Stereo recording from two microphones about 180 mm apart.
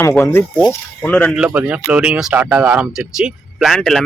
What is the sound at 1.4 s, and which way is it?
Speech, 5° right (ahead or behind).